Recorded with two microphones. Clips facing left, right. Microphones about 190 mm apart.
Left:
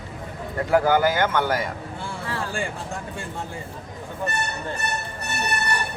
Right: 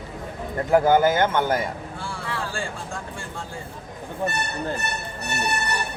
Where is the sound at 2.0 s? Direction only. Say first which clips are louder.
Left 1 dB; 20° left (ahead or behind).